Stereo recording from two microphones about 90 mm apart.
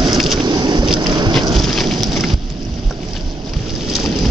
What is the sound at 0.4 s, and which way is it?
Vehicle, 55° right (ahead or behind).